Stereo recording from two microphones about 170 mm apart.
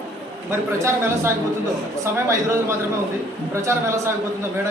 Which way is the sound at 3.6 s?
15° right (ahead or behind).